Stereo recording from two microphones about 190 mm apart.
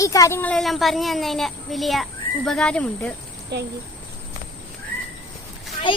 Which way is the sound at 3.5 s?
60° right (ahead or behind).